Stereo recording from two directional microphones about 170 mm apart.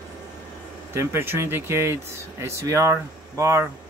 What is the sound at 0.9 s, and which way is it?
Speech, 15° right (ahead or behind).